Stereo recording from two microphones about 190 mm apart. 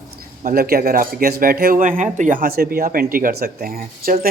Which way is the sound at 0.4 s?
50° right (ahead or behind).